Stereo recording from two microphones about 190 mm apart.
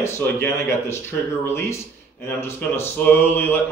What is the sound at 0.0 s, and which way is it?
Speech, 10° left (ahead or behind).